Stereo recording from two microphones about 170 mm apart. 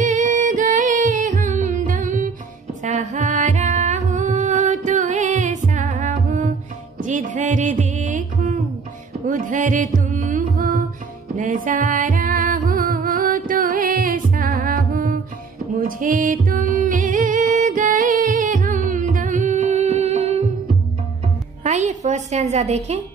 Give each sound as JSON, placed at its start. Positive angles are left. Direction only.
{"t": 0.0, "sound": "singing", "side_deg": -50}
{"t": 2.8, "sound": "music", "side_deg": -45}
{"t": 21.6, "sound": "a sound", "side_deg": -45}